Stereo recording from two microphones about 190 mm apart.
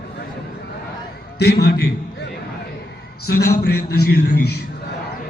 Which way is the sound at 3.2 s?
60° left (ahead or behind).